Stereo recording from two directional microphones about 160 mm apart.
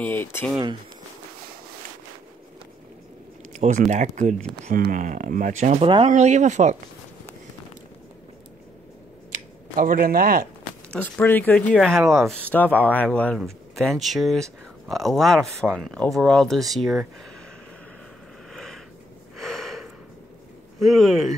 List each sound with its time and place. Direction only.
0.0 s speech: 10° left (ahead or behind)
3.5 s speech: 50° right (ahead or behind)
4.6 s speech: 60° right (ahead or behind)
9.3 s speech: 60° right (ahead or behind)
11.0 s speech: 10° left (ahead or behind)
18.5 s a sound: 5° left (ahead or behind)
19.3 s gasp: centre (ahead or behind)
20.8 s speech: centre (ahead or behind)